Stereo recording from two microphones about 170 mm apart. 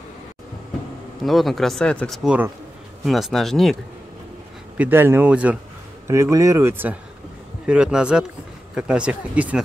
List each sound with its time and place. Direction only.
1.2 s speech: centre (ahead or behind)
4.7 s speech: 10° right (ahead or behind)